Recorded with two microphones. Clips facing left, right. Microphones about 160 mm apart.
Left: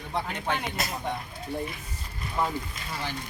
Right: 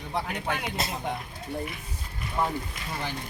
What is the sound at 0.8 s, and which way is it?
Speech, 30° right (ahead or behind).